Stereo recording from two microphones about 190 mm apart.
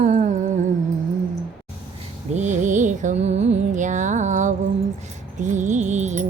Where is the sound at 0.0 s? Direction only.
40° right (ahead or behind).